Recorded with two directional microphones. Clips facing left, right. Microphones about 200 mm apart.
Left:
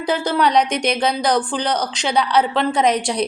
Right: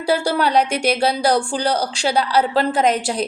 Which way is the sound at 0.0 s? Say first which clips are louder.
Even; 10° right (ahead or behind).